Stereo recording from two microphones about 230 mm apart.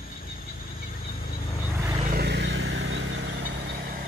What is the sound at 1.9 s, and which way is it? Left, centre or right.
Vehicle, right.